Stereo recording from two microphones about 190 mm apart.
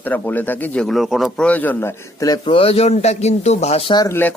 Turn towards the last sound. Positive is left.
turn(degrees=15)  # may be behind; listen again after turning